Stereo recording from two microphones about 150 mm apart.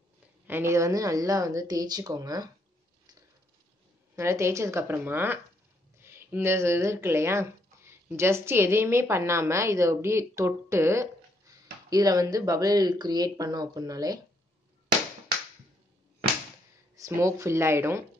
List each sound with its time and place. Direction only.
0.5 s speech: 15° right (ahead or behind)
4.1 s speech: 15° right (ahead or behind)
16.9 s speech: 20° right (ahead or behind)